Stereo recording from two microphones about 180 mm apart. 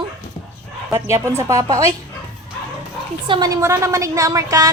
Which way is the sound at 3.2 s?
25° right (ahead or behind).